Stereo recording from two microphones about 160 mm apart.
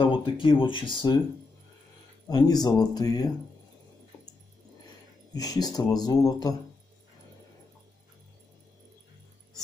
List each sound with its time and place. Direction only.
0.0 s speech: 35° left (ahead or behind)
2.2 s speech: 25° left (ahead or behind)
5.3 s speech: 25° left (ahead or behind)